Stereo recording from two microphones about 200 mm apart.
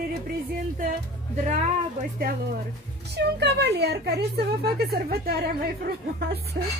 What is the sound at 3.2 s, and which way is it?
A woman's voice, 55° right (ahead or behind).